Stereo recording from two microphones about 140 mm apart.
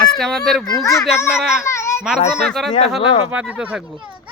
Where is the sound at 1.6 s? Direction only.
20° left (ahead or behind).